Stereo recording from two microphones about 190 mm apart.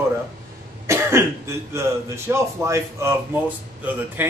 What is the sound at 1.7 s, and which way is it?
Speech, 15° right (ahead or behind).